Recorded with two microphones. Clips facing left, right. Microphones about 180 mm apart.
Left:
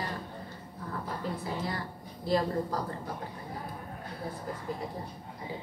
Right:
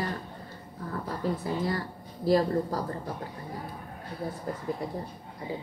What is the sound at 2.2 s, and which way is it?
Speech, 40° right (ahead or behind).